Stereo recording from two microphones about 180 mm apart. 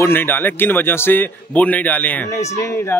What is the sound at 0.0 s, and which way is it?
A man's voice, 10° left (ahead or behind).